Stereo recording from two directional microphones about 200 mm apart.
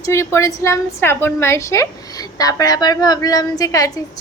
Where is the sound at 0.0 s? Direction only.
15° left (ahead or behind).